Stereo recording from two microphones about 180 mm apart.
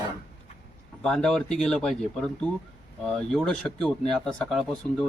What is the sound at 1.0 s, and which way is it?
Speech, 5° left (ahead or behind).